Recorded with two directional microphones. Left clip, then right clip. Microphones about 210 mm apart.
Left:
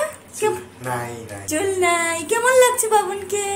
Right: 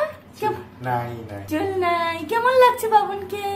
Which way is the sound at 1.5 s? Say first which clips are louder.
Left 3 dB; 15° left (ahead or behind).